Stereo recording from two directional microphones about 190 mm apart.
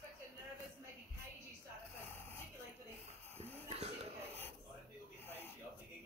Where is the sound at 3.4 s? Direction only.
35° right (ahead or behind).